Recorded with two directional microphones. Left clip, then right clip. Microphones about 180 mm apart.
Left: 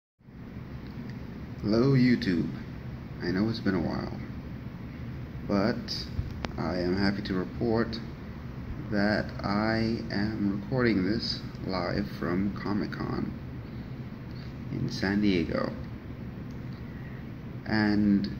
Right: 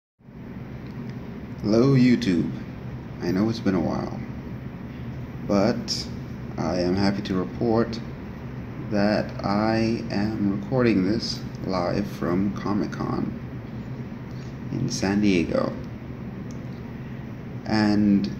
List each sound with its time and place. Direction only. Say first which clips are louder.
1.6 s speech: right 5 dB; 20° right (ahead or behind)
5.5 s speech: right 6 dB; 20° right (ahead or behind)
14.9 s speech: right 5 dB; 20° right (ahead or behind)
17.6 s speech: right 5 dB; 20° right (ahead or behind)